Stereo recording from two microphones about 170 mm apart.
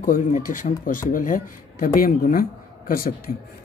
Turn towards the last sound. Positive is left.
turn(degrees=60)  # may be behind; listen again after turning